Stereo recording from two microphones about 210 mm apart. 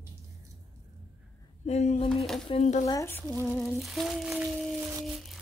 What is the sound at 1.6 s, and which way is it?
Speech, 30° left (ahead or behind).